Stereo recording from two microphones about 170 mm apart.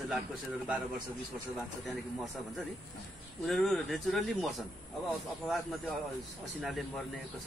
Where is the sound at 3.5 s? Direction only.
Centre (ahead or behind).